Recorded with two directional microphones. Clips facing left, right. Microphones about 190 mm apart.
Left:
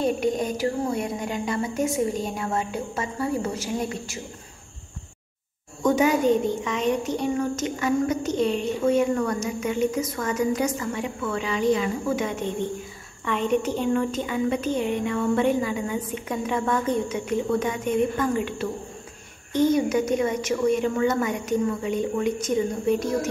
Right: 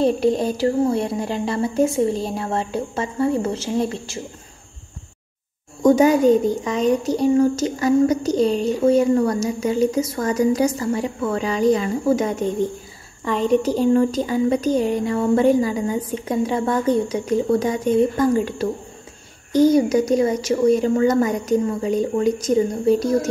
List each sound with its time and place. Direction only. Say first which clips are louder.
0.0 s speech: right 6 dB; 30° right (ahead or behind)
5.8 s speech: right 6 dB; 40° right (ahead or behind)